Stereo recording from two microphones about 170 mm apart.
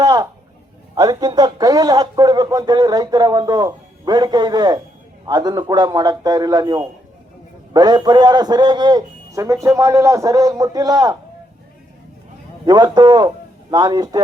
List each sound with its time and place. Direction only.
0.0 s a sound: 20° right (ahead or behind)
0.9 s speech: 25° right (ahead or behind)
12.6 s a man's voice: 25° right (ahead or behind)